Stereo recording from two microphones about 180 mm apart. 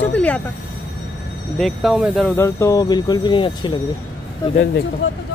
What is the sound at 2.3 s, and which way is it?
Speech, 15° left (ahead or behind).